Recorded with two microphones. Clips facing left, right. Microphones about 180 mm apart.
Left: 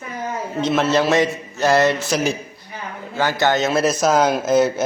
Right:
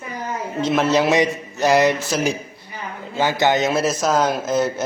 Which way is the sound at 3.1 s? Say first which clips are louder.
Even; 20° right (ahead or behind).